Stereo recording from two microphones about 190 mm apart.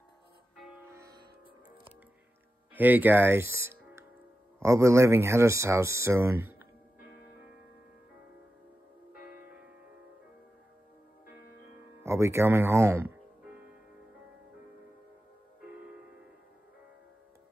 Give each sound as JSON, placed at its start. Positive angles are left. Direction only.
{"t": 0.9, "sound": "music", "side_deg": -15}
{"t": 2.7, "sound": "speech", "side_deg": -10}
{"t": 7.0, "sound": "music", "side_deg": 55}
{"t": 12.0, "sound": "speech", "side_deg": -15}